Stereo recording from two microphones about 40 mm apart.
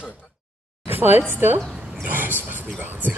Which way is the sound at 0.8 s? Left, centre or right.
Right.